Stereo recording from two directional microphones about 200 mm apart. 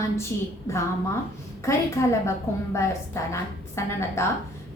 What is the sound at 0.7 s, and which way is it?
Speech, 15° left (ahead or behind).